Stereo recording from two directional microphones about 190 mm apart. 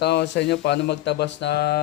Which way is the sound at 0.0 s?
60° left (ahead or behind).